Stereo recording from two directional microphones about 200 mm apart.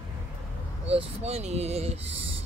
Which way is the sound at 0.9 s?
30° right (ahead or behind).